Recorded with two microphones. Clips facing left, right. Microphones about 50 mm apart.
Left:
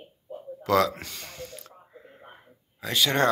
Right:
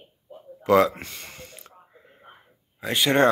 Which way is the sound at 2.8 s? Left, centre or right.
Right.